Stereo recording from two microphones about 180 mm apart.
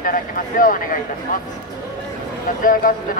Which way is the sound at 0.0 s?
50° left (ahead or behind).